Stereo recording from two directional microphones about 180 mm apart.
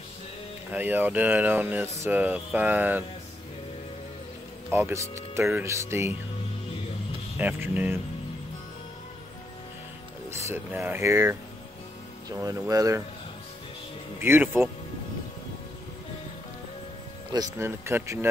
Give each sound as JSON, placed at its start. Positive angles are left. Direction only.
{"t": 0.7, "sound": "speech", "side_deg": -10}
{"t": 4.6, "sound": "speech", "side_deg": -15}
{"t": 7.3, "sound": "speech", "side_deg": -10}
{"t": 10.3, "sound": "speech", "side_deg": -10}
{"t": 14.2, "sound": "speech", "side_deg": -10}
{"t": 17.3, "sound": "speech", "side_deg": -15}